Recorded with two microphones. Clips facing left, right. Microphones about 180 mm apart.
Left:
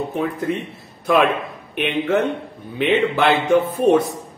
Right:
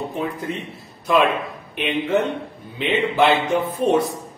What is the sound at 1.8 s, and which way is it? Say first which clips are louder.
A man's voice: left 1 dB; 55° left (ahead or behind).